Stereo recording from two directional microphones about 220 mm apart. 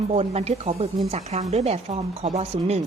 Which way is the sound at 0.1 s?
30° right (ahead or behind).